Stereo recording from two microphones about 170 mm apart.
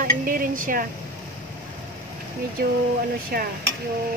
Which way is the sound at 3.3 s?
65° right (ahead or behind).